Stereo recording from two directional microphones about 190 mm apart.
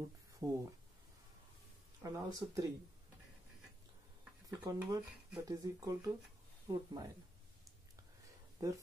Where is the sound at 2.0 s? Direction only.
20° right (ahead or behind).